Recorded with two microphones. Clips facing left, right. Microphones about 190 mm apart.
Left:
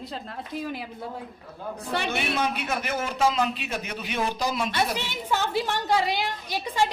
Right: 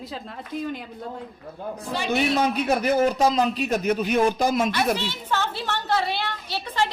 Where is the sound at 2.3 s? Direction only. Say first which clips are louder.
Right 6 dB; 35° right (ahead or behind).